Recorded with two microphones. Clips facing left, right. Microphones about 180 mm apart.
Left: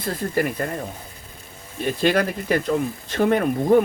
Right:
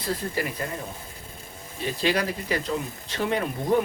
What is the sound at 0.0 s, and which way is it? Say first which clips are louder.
Speech: left 5 dB; 50° left (ahead or behind).